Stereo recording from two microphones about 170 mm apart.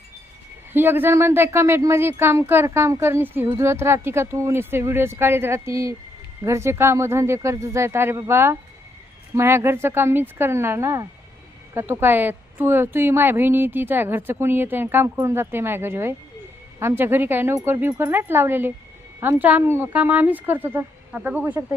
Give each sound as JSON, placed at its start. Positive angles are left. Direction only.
{"t": 0.7, "sound": "a woman's voice", "side_deg": -10}